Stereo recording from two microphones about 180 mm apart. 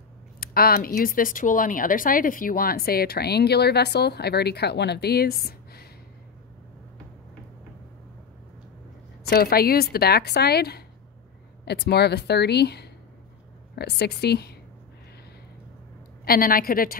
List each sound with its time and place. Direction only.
0.4 s speech: 55° left (ahead or behind)
9.3 s speech: 60° left (ahead or behind)
16.3 s a woman's voice: 55° left (ahead or behind)